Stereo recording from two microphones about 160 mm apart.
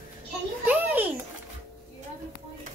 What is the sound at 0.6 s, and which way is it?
Speech, 10° right (ahead or behind).